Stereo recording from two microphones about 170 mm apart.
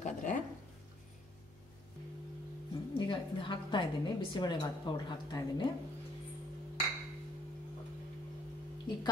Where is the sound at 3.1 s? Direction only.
30° left (ahead or behind).